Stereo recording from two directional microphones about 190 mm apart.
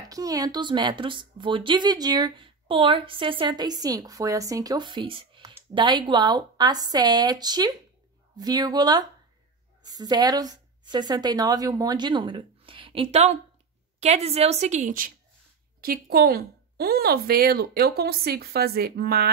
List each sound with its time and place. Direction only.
0.1 s a woman's voice: 20° right (ahead or behind); by 15.0 s 40° right (ahead or behind)
15.8 s speech: 50° right (ahead or behind)